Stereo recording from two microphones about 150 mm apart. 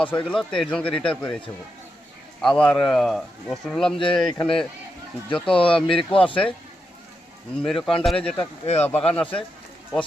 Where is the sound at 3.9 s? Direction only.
35° left (ahead or behind).